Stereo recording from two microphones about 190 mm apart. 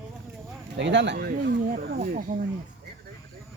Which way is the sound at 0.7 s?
70° right (ahead or behind).